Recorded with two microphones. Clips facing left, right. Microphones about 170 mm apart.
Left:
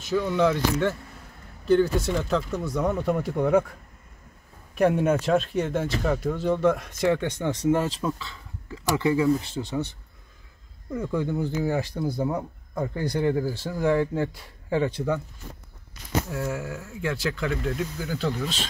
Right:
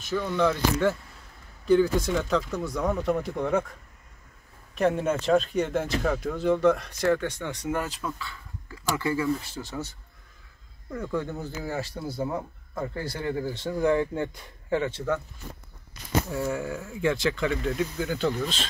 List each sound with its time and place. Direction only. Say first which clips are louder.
0.1 s speech: left 3 dB; centre (ahead or behind)
4.7 s speech: left 3 dB; 10° left (ahead or behind)
5.1 s speech: even; centre (ahead or behind)
7.2 s speech: left 4 dB; 25° left (ahead or behind)
10.9 s speech: left 3 dB; 10° left (ahead or behind)
16.3 s speech: right 1 dB; centre (ahead or behind)